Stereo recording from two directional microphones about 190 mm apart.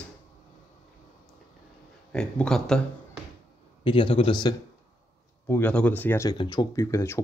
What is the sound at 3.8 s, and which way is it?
Speech, 25° left (ahead or behind).